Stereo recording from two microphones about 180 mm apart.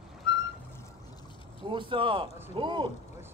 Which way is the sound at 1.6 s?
30° right (ahead or behind).